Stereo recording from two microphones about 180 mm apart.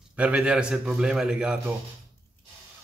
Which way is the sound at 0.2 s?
5° right (ahead or behind).